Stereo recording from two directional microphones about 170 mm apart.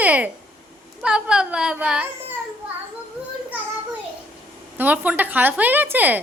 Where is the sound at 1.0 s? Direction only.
5° right (ahead or behind).